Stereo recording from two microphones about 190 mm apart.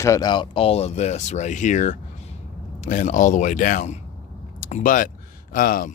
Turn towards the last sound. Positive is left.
turn(degrees=50)  # may be behind; listen again after turning